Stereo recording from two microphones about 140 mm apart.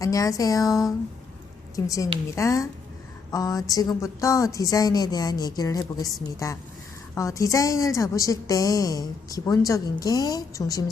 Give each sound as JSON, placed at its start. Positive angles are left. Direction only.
{"t": 0.0, "sound": "a woman's voice", "side_deg": 25}